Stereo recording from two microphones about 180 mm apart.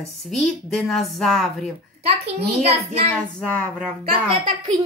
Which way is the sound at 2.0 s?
35° right (ahead or behind).